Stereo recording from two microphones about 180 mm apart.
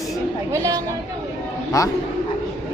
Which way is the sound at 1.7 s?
20° left (ahead or behind).